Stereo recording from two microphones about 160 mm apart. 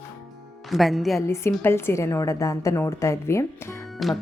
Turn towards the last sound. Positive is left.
turn(degrees=0)  # may be behind; listen again after turning